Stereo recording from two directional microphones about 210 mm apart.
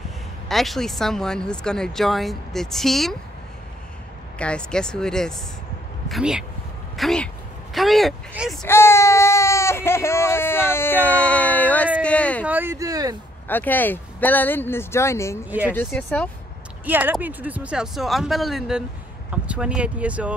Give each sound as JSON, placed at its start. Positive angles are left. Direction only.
{"t": 0.5, "sound": "speech", "side_deg": 0}
{"t": 4.4, "sound": "speech", "side_deg": 5}
{"t": 8.6, "sound": "baby cry", "side_deg": 10}
{"t": 11.2, "sound": "a sound", "side_deg": 5}
{"t": 12.4, "sound": "speech", "side_deg": -10}
{"t": 13.5, "sound": "speech", "side_deg": 10}
{"t": 16.8, "sound": "speech", "side_deg": -5}